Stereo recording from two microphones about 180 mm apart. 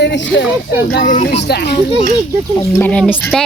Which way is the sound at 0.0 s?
90° left.